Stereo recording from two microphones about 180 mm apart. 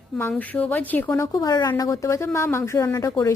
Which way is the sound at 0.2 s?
10° left (ahead or behind).